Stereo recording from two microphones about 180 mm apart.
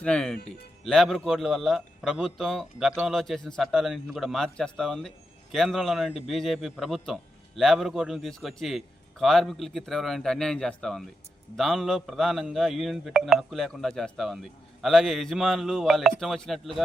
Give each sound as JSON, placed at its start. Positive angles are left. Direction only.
{"t": 0.0, "sound": "a man's voice", "side_deg": 5}